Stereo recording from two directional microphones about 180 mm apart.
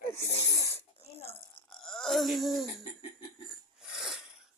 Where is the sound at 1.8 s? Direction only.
Centre (ahead or behind).